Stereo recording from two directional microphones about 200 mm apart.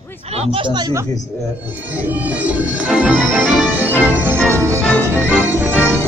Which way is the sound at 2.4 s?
5° right (ahead or behind).